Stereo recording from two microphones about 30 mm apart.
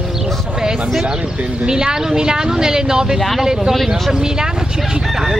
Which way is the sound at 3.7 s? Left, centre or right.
Centre.